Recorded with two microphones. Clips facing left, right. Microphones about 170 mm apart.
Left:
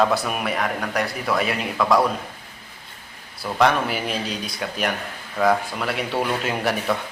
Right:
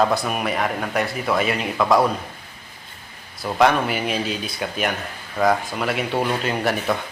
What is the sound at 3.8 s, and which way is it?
Speech, centre (ahead or behind).